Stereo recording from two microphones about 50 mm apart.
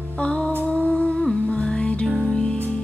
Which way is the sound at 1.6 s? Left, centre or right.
Centre.